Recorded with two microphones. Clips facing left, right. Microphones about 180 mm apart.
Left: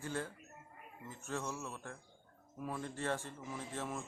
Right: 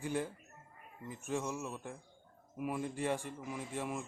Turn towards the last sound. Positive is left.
turn(degrees=-10)  # may be behind; listen again after turning